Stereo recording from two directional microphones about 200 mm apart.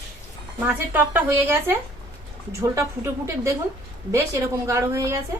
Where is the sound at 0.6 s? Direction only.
10° right (ahead or behind).